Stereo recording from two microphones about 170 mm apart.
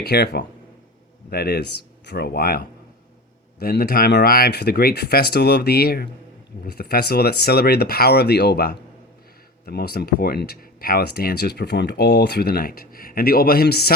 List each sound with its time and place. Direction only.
0.0 s speech: 70° left (ahead or behind)